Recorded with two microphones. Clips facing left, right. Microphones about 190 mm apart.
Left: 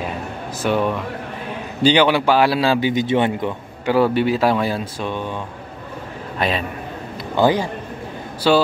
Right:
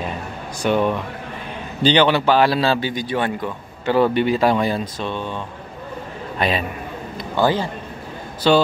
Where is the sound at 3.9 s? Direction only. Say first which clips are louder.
Even; 5° left (ahead or behind).